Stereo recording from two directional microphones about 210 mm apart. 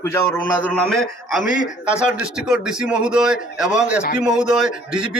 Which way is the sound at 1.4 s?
40° left (ahead or behind).